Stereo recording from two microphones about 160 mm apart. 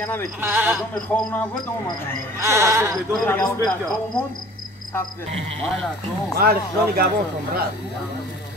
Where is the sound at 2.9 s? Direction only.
5° left (ahead or behind).